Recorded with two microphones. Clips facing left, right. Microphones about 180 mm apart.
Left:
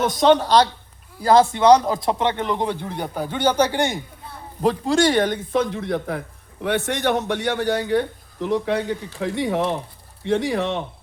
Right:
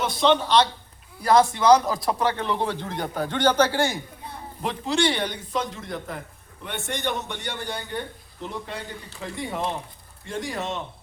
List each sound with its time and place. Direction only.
0.0 s speech: 45° left (ahead or behind)
1.2 s speech: 30° left (ahead or behind)
4.6 s speech: 40° left (ahead or behind); by 10.8 s 65° left (ahead or behind)